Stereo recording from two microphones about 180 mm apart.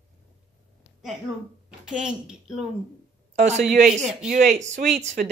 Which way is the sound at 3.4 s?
40° right (ahead or behind).